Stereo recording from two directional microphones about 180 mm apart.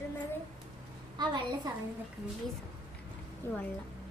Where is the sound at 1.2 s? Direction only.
25° right (ahead or behind).